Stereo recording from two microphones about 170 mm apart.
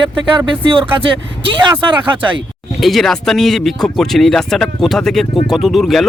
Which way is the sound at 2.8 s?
Centre (ahead or behind).